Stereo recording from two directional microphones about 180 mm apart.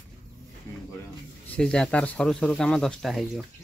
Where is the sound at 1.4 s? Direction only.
5° left (ahead or behind).